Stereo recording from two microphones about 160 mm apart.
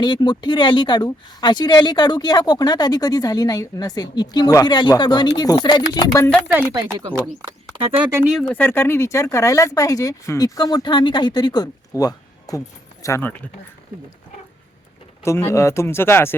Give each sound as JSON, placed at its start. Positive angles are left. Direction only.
{"t": 0.0, "sound": "speech", "side_deg": 30}
{"t": 7.4, "sound": "speech", "side_deg": -35}
{"t": 8.1, "sound": "speech", "side_deg": -5}
{"t": 8.5, "sound": "speech", "side_deg": 15}
{"t": 15.2, "sound": "speech", "side_deg": 15}